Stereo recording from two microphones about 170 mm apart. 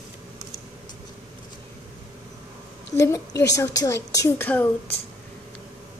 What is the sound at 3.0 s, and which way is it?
Child singing, 20° left (ahead or behind).